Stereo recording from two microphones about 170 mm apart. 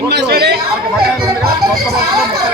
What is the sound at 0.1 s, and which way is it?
Chatter, 75° right (ahead or behind).